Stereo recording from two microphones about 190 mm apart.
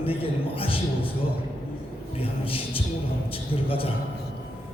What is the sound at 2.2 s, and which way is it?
Music, 30° left (ahead or behind).